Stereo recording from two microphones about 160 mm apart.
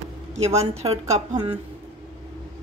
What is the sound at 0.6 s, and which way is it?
Speech, 40° right (ahead or behind).